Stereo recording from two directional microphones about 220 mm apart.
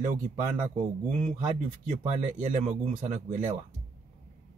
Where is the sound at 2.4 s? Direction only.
35° right (ahead or behind).